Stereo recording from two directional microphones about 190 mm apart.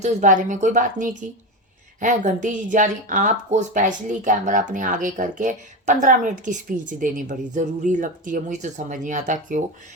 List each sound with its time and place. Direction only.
0.0 s speech: 40° right (ahead or behind)